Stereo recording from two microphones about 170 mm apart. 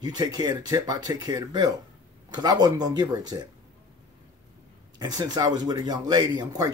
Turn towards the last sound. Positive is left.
turn(degrees=-25)  # may be behind; listen again after turning